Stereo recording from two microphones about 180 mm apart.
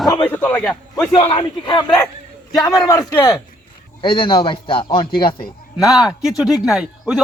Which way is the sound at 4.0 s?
30° left (ahead or behind).